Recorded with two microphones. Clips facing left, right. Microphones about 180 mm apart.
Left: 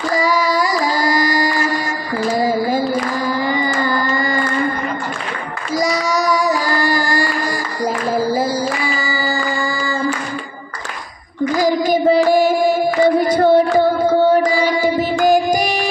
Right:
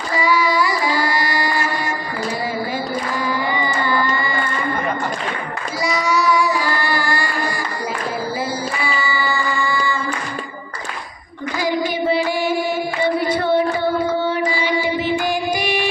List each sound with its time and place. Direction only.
0.1 s child singing: 40° left (ahead or behind)
2.3 s a sound: 40° left (ahead or behind)
5.8 s child singing: 40° left (ahead or behind)
8.1 s singing: 40° left (ahead or behind)
11.5 s child singing: 40° left (ahead or behind)
13.2 s music: 40° left (ahead or behind)